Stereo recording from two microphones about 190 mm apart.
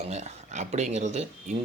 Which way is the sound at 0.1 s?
35° right (ahead or behind).